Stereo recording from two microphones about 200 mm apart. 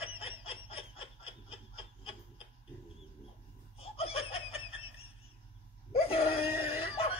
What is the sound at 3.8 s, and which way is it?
Laughter, 30° left (ahead or behind).